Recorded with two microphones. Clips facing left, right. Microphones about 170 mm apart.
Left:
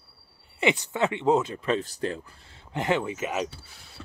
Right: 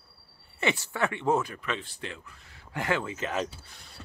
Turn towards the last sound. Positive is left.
turn(degrees=10)  # may be behind; listen again after turning